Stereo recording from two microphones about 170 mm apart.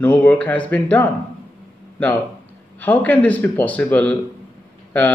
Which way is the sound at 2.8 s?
10° left (ahead or behind).